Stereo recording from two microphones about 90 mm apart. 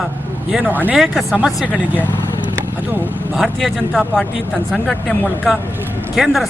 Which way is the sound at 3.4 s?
5° left (ahead or behind).